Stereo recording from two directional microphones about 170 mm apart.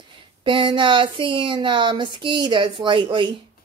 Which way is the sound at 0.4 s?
25° right (ahead or behind).